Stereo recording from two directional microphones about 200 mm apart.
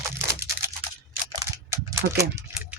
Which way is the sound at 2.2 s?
10° right (ahead or behind).